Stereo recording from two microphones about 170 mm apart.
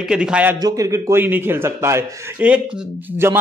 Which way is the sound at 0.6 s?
20° right (ahead or behind).